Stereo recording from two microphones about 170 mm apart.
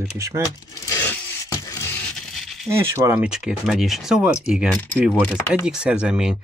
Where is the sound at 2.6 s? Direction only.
15° right (ahead or behind).